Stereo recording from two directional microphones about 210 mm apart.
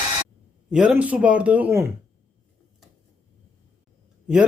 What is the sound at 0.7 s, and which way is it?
A man's voice, 5° right (ahead or behind).